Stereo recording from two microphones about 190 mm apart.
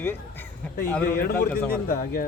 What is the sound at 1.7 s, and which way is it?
Speech, 50° left (ahead or behind).